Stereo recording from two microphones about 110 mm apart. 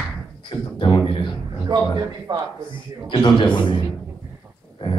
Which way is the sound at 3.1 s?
45° left (ahead or behind).